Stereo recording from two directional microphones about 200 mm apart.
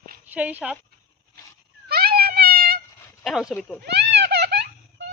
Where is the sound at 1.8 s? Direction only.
50° right (ahead or behind).